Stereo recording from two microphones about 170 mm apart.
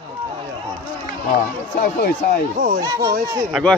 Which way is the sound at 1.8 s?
60° left (ahead or behind).